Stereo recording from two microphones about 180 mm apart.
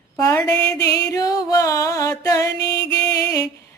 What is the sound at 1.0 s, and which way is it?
Music, 20° left (ahead or behind).